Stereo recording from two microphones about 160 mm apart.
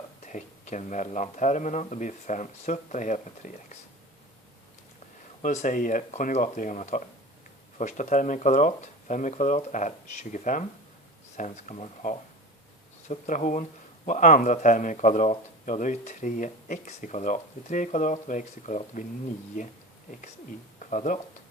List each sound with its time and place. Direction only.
0.3 s speech: 50° left (ahead or behind)
5.4 s speech: 50° left (ahead or behind)
20.7 s a sound: 50° left (ahead or behind)